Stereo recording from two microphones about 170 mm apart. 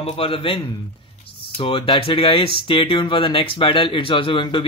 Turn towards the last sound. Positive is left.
turn(degrees=30)  # may be behind; listen again after turning